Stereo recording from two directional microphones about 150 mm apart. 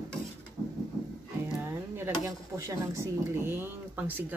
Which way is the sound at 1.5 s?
15° right (ahead or behind).